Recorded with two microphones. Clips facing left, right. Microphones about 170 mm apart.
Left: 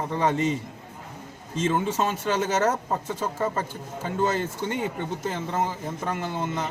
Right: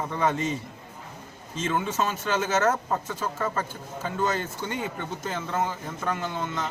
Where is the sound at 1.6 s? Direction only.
25° left (ahead or behind).